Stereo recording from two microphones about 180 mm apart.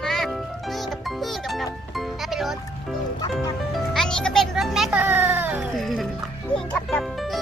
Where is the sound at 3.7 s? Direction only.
Centre (ahead or behind).